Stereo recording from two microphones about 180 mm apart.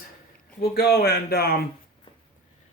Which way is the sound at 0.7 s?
60° left (ahead or behind).